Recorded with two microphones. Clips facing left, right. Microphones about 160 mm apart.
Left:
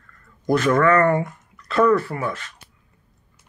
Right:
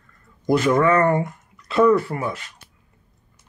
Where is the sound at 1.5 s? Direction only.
10° right (ahead or behind).